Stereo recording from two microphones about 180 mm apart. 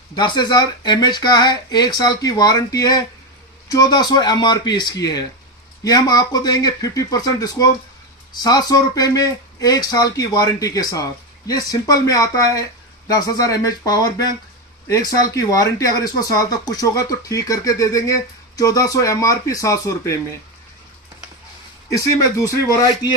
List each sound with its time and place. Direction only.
0.2 s speech: 25° left (ahead or behind)
15.3 s speech: 20° left (ahead or behind)
21.9 s speech: 20° left (ahead or behind)